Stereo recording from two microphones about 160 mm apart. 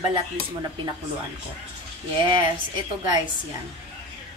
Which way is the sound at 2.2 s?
30° right (ahead or behind).